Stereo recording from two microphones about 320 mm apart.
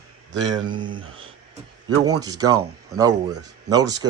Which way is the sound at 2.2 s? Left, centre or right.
Centre.